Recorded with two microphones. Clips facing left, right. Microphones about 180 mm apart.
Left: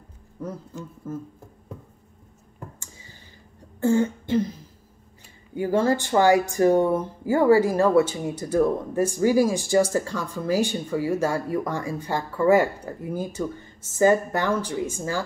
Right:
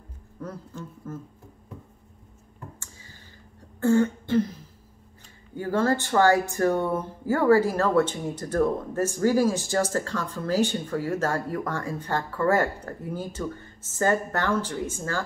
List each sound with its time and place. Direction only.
0.4 s speech: 10° left (ahead or behind)
3.8 s throat clearing: 15° left (ahead or behind)
5.5 s speech: 15° left (ahead or behind)